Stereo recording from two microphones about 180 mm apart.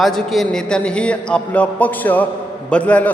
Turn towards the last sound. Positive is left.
turn(degrees=5)  # may be behind; listen again after turning